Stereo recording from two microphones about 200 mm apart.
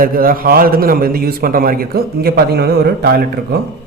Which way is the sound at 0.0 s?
45° right (ahead or behind).